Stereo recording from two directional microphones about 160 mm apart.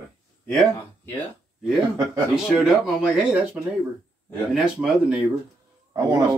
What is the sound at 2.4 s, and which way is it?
Speech, 5° right (ahead or behind).